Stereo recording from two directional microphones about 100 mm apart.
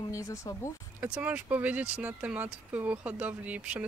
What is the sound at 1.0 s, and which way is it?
Speech, 15° right (ahead or behind).